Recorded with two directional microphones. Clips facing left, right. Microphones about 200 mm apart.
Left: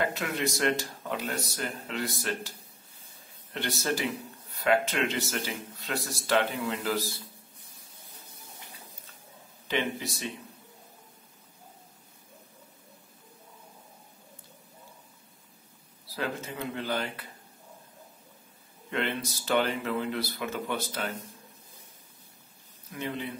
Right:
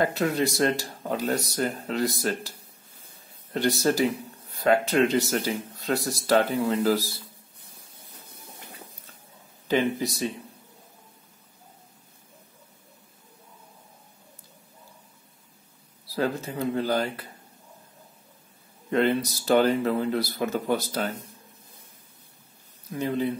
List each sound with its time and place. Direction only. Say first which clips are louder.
0.0 s speech: right 6 dB; 35° right (ahead or behind)
3.5 s speech: right 8 dB; 40° right (ahead or behind)
9.7 s speech: right 7 dB; 40° right (ahead or behind)
16.2 s speech: right 7 dB; 35° right (ahead or behind)
18.9 s speech: right 9 dB; 40° right (ahead or behind)
22.9 s speech: right 8 dB; 40° right (ahead or behind)